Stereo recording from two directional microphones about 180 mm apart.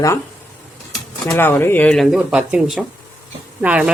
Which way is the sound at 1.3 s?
10° left (ahead or behind).